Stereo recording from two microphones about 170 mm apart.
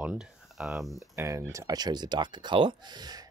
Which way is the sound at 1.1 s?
20° right (ahead or behind).